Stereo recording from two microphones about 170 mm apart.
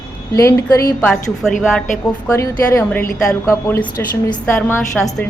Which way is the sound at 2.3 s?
15° left (ahead or behind).